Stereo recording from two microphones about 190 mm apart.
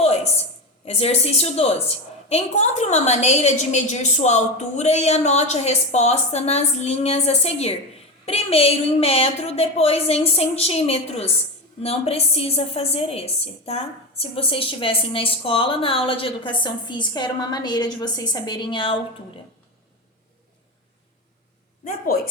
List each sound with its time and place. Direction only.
0.9 s a woman's voice: 35° left (ahead or behind)
21.8 s a woman's voice: 50° left (ahead or behind)